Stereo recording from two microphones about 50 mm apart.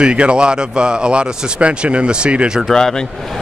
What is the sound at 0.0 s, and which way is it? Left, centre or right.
Speech, right.